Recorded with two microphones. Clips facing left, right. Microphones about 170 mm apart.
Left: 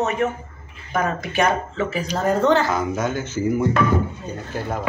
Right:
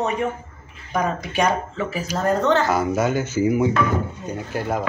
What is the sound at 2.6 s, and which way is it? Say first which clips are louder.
Speech: right 2 dB; 10° right (ahead or behind).